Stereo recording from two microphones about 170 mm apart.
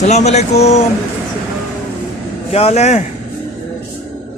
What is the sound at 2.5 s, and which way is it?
Speech, 35° left (ahead or behind).